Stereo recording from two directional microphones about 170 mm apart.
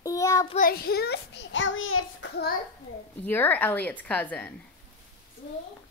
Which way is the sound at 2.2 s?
75° left (ahead or behind).